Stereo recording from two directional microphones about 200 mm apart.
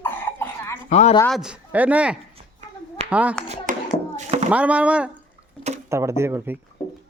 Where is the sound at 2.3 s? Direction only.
30° right (ahead or behind).